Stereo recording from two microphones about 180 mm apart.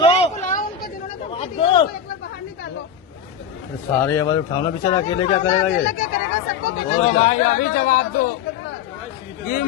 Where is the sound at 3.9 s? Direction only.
10° left (ahead or behind); by 5.6 s 30° left (ahead or behind).